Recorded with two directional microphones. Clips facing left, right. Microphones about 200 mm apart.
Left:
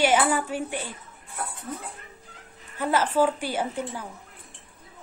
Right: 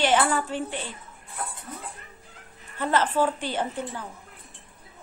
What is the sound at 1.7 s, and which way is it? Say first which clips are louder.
Speech: left 5 dB; 45° left (ahead or behind).